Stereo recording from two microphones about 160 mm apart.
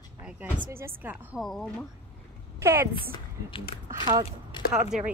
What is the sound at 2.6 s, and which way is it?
Speech, 15° right (ahead or behind).